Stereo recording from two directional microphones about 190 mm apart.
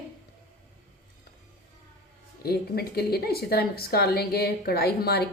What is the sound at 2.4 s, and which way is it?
A woman's voice, 55° left (ahead or behind).